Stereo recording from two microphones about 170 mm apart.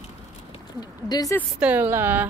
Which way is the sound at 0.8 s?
25° left (ahead or behind).